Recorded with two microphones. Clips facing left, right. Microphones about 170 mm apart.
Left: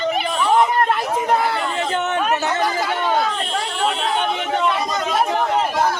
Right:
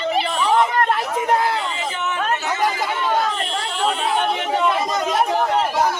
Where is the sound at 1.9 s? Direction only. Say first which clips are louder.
Left 5 dB; 65° left (ahead or behind).